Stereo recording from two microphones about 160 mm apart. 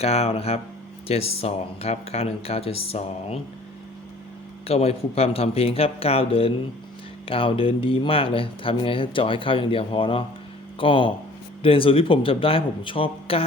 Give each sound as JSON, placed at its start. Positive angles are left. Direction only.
{"t": 0.0, "sound": "speech", "side_deg": 40}
{"t": 4.6, "sound": "speech", "side_deg": 40}